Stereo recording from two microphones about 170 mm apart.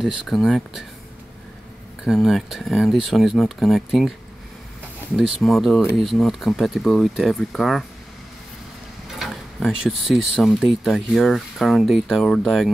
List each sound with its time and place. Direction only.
0.0 s speech: centre (ahead or behind)
2.0 s speech: centre (ahead or behind)
5.1 s speech: centre (ahead or behind)
9.1 s speech: centre (ahead or behind)